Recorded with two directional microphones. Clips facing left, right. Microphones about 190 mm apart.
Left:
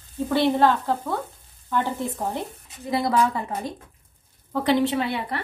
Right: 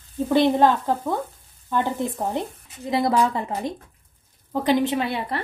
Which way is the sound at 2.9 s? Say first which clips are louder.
Right 2 dB; 20° right (ahead or behind).